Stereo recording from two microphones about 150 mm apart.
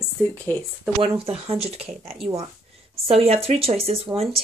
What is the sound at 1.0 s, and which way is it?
Speech, 40° right (ahead or behind).